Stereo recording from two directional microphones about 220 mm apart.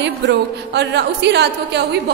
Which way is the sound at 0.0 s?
50° right (ahead or behind).